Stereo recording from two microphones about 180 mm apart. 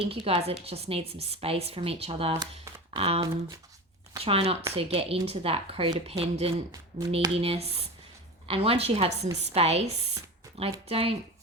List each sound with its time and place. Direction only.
0.1 s a woman's voice: 30° right (ahead or behind)